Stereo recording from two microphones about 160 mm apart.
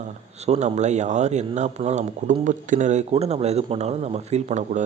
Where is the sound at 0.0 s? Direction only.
45° right (ahead or behind).